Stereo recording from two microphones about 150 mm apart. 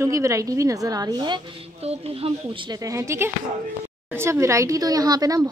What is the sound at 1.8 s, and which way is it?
Speech, 40° right (ahead or behind).